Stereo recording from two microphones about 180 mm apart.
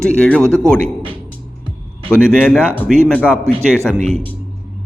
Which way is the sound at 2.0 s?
5° left (ahead or behind).